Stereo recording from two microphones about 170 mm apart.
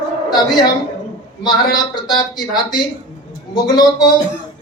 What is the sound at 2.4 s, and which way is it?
Speech, 25° left (ahead or behind).